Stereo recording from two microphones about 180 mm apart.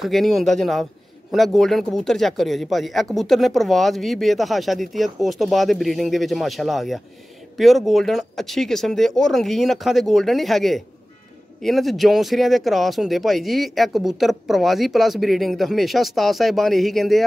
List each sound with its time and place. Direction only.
0.0 s speech: centre (ahead or behind)